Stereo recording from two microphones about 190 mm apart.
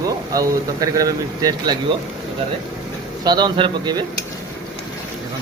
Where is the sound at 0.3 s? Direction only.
20° right (ahead or behind).